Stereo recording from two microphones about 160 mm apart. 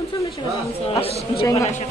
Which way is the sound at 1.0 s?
35° left (ahead or behind).